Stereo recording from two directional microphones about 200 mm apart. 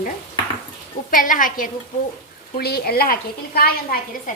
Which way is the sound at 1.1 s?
40° left (ahead or behind).